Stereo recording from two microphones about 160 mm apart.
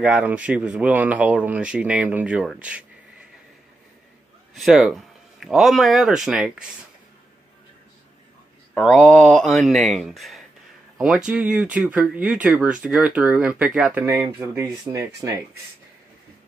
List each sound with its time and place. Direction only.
0.0 s speech: 5° right (ahead or behind)
4.6 s speech: 5° right (ahead or behind)
8.7 s speech: 5° left (ahead or behind)
14.0 s speech: 20° right (ahead or behind)